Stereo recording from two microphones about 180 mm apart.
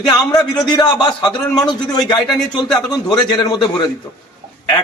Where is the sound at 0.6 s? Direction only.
25° left (ahead or behind).